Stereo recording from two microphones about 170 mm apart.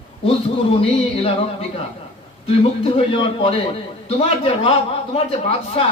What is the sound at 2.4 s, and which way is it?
A man's voice, 35° left (ahead or behind).